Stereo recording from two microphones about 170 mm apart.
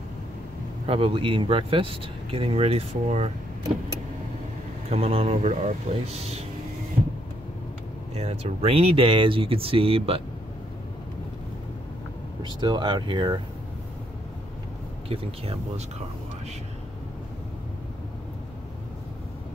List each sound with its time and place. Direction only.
0.8 s speech: 35° right (ahead or behind)
4.8 s speech: 35° right (ahead or behind)
8.1 s speech: 40° right (ahead or behind)
12.4 s speech: 25° right (ahead or behind)
15.0 s speech: 35° right (ahead or behind)